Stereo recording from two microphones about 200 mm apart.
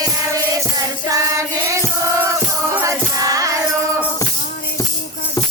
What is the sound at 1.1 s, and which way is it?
Music, 15° right (ahead or behind).